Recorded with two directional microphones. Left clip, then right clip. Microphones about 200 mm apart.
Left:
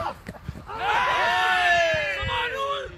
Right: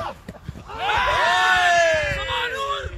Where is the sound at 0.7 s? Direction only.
45° right (ahead or behind).